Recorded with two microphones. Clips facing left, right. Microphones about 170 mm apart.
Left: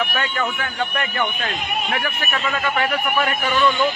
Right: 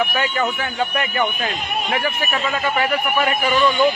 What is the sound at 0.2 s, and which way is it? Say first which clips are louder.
A man's voice: right 3 dB; 10° right (ahead or behind).